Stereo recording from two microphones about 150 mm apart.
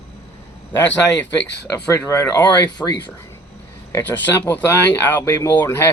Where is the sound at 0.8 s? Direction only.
10° left (ahead or behind).